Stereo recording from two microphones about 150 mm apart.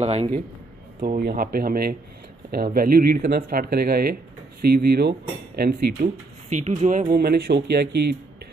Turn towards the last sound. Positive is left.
turn(degrees=-90)